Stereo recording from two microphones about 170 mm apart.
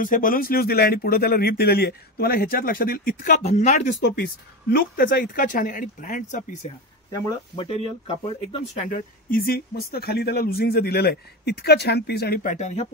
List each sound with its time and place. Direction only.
0.0 s speech: 55° left (ahead or behind)
4.0 s speech: 65° left (ahead or behind); by 6.8 s 50° left (ahead or behind)
7.1 s speech: 20° left (ahead or behind)
8.8 s speech: 55° left (ahead or behind)
12.4 s speech: 45° left (ahead or behind)